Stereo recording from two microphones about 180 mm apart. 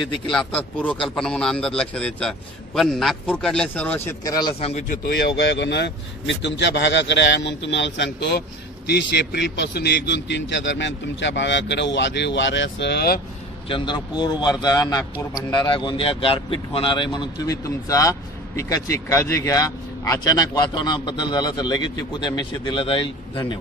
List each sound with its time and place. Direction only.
0.0 s a man's voice: 5° left (ahead or behind)
4.2 s speech: 20° left (ahead or behind); by 4.9 s 35° left (ahead or behind)
5.0 s speech: 65° left (ahead or behind)
13.7 s speech: 25° left (ahead or behind)